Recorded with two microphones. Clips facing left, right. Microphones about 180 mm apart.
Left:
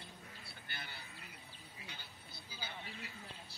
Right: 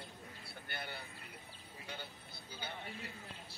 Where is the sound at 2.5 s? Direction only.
55° right (ahead or behind).